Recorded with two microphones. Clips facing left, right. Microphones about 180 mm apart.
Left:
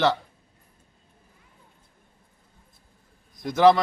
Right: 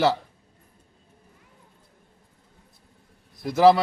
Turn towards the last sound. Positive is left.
turn(degrees=-5)  # may be behind; listen again after turning